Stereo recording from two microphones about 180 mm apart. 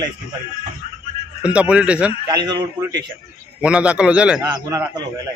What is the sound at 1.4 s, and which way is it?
Speech, 5° right (ahead or behind).